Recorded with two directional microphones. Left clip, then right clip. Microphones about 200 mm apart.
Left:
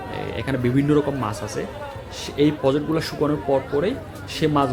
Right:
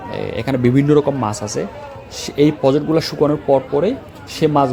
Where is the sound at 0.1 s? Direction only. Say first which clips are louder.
Right 6 dB; 35° right (ahead or behind).